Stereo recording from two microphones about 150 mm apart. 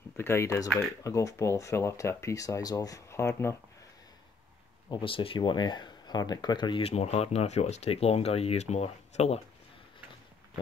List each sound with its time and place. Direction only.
0.2 s speech: 15° left (ahead or behind)
4.8 s speech: 35° left (ahead or behind)